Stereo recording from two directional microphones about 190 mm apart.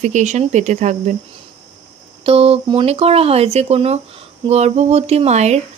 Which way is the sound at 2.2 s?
30° right (ahead or behind).